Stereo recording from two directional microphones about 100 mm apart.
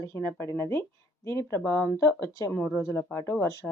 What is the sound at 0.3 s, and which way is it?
Speech, 30° left (ahead or behind).